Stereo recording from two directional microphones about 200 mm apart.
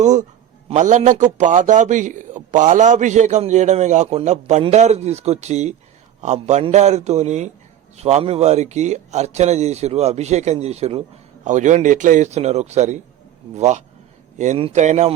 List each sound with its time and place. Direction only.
0.0 s a man's voice: 35° right (ahead or behind)